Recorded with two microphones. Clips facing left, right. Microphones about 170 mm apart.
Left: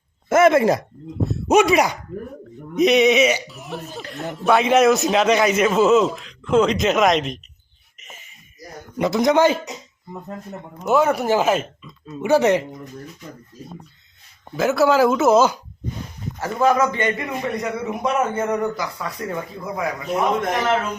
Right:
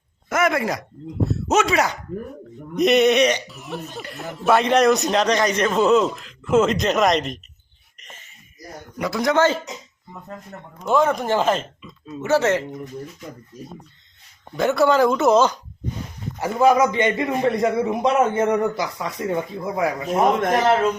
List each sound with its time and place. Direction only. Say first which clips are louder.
0.3 s speech: left 7 dB; 25° left (ahead or behind)
1.3 s speech: left 5 dB; 15° left (ahead or behind)
2.7 s speech: left 1 dB; centre (ahead or behind)
8.0 s a sound: left 1 dB; 10° left (ahead or behind)
9.0 s a man's voice: left 3 dB; 25° left (ahead or behind)
10.8 s speech: left 1 dB; 5° left (ahead or behind)
14.5 s speech: left 1 dB; 5° left (ahead or behind)
16.4 s a man's voice: right 2 dB; 15° right (ahead or behind)